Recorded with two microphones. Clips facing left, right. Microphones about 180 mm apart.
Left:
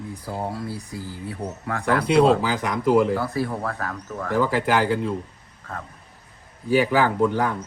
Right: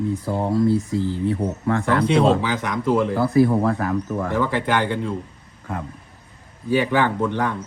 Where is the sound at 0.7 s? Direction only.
25° right (ahead or behind).